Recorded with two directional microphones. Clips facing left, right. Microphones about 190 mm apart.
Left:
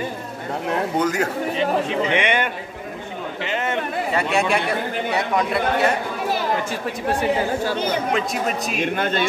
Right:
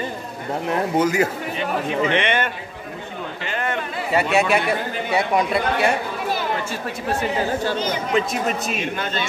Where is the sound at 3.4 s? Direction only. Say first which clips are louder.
Left 2 dB; 20° left (ahead or behind).